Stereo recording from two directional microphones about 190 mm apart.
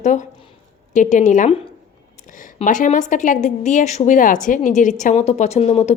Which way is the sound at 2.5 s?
40° left (ahead or behind).